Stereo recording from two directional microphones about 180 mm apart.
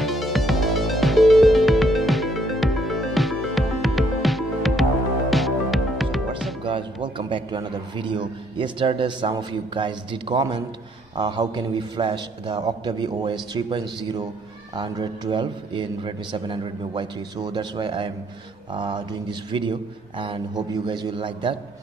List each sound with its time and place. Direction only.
0.0 s music: centre (ahead or behind)
6.6 s a man's voice: 25° right (ahead or behind)